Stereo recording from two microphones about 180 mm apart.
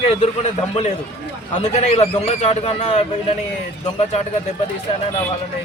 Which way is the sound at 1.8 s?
35° left (ahead or behind).